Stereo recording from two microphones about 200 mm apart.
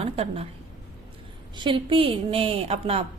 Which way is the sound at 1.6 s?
25° right (ahead or behind).